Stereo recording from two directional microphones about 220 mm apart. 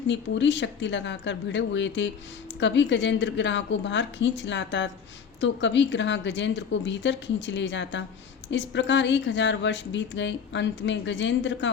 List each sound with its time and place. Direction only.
0.1 s speech: 55° left (ahead or behind)